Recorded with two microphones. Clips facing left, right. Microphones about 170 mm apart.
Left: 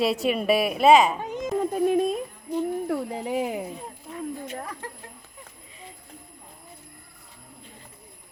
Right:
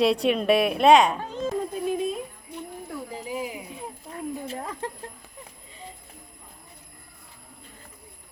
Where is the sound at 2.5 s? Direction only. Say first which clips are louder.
Left 16 dB; 65° left (ahead or behind).